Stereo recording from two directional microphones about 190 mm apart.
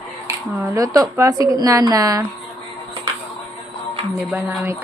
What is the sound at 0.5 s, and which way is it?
A woman's voice, 15° right (ahead or behind).